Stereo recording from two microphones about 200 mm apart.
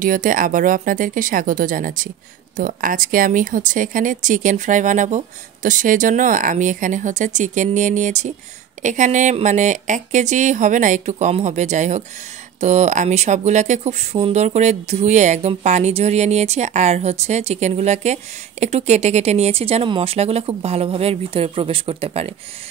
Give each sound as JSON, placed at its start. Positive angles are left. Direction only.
{"t": 0.0, "sound": "speech", "side_deg": -40}